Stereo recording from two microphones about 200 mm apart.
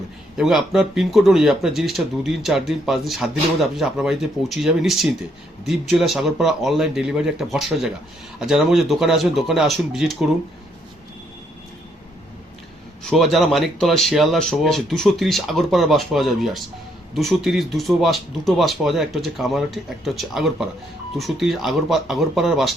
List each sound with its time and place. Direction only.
0.3 s speech: centre (ahead or behind)
13.1 s speech: centre (ahead or behind)